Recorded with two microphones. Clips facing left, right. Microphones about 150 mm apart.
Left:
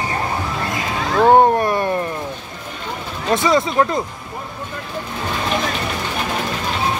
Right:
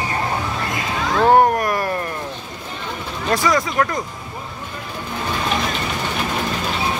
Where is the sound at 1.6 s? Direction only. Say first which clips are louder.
Left 3 dB; 25° left (ahead or behind).